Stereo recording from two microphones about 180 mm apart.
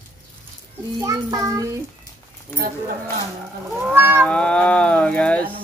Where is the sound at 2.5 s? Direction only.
15° left (ahead or behind).